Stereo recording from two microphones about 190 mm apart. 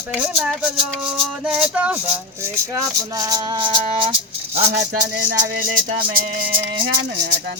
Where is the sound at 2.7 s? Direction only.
20° right (ahead or behind).